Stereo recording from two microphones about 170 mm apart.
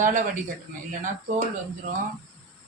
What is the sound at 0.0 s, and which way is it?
Speech, 50° right (ahead or behind).